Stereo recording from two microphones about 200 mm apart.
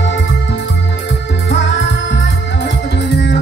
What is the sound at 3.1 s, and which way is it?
Music, 60° left (ahead or behind).